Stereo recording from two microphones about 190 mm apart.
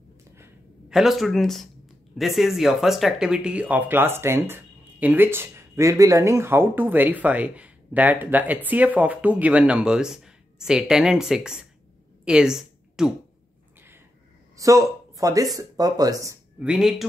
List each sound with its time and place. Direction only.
0.4 s a sound: 5° right (ahead or behind)
2.1 s a woman's voice: centre (ahead or behind)
14.6 s speech: 15° right (ahead or behind)
16.5 s speech: 5° right (ahead or behind)